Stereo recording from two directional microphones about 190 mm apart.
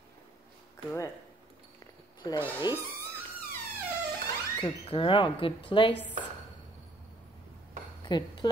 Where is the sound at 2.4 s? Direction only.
10° right (ahead or behind).